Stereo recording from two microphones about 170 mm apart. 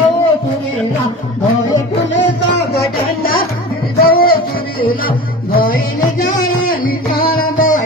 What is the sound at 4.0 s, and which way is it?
Music, 60° left (ahead or behind).